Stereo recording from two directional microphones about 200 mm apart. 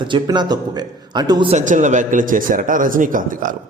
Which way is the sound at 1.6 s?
40° right (ahead or behind).